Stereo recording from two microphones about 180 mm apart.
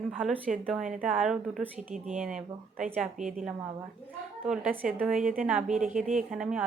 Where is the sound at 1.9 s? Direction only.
45° right (ahead or behind).